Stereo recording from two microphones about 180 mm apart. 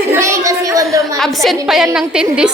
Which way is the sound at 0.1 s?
15° right (ahead or behind).